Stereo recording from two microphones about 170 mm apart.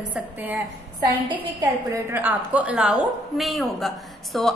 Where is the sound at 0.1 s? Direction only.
10° right (ahead or behind).